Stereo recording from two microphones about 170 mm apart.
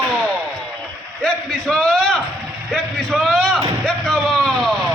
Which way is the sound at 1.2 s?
Centre (ahead or behind).